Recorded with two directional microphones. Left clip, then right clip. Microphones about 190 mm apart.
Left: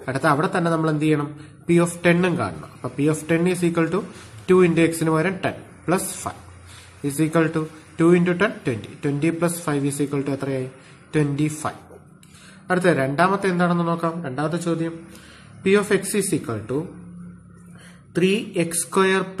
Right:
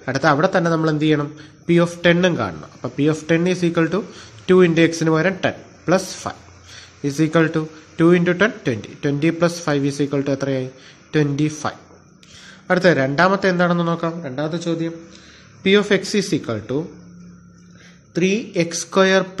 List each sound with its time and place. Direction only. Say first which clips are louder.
0.0 s speech: right 4 dB; 20° right (ahead or behind)
18.1 s speech: right 1 dB; 15° right (ahead or behind)